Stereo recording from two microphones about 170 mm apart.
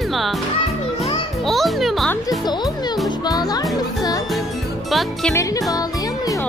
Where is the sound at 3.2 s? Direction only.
25° left (ahead or behind).